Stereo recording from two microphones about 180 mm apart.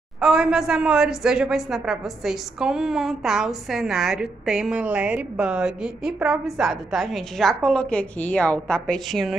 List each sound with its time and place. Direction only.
0.2 s a woman's voice: 5° right (ahead or behind)